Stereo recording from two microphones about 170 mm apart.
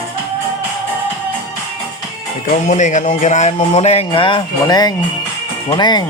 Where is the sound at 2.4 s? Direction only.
45° left (ahead or behind); by 6.0 s 25° left (ahead or behind).